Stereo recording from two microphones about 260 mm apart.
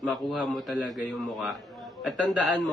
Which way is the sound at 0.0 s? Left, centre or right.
Centre.